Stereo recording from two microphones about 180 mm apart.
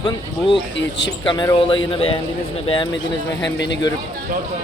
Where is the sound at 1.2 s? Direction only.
25° left (ahead or behind).